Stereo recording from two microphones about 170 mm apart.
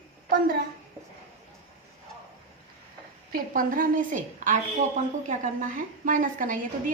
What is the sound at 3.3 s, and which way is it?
A woman's voice, 55° right (ahead or behind).